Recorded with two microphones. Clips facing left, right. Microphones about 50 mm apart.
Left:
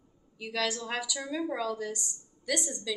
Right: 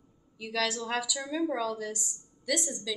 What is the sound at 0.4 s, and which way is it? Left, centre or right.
A woman's voice, centre.